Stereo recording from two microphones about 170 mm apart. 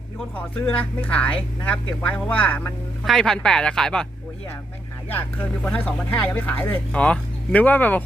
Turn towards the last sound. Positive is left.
turn(degrees=10)  # may be behind; listen again after turning